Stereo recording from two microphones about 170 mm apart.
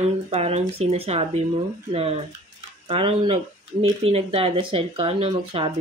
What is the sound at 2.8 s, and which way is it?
Speech, 35° right (ahead or behind).